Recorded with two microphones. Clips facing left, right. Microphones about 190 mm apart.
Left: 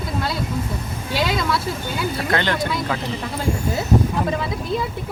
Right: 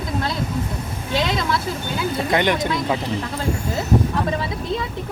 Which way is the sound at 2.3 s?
20° right (ahead or behind).